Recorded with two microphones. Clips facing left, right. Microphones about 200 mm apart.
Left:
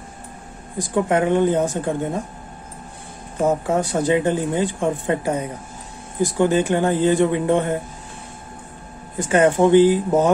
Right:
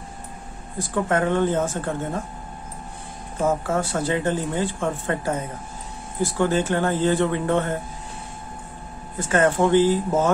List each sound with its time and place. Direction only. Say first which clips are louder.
0.7 s speech: left 3 dB; 15° left (ahead or behind)
3.4 s speech: left 3 dB; 15° left (ahead or behind)
9.2 s speech: left 4 dB; 15° left (ahead or behind)